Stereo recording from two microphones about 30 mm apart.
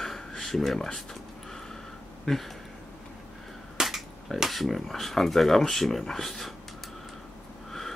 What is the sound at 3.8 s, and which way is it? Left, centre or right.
Cap gun, centre.